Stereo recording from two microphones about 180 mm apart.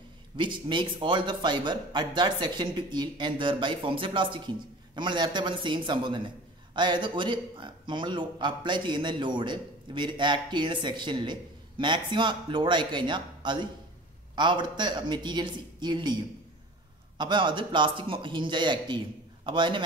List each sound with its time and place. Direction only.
0.4 s speech: 25° right (ahead or behind)
17.2 s speech: 25° right (ahead or behind)